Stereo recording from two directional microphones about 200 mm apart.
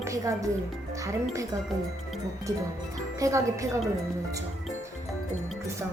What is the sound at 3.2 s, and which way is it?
Speech, 15° right (ahead or behind).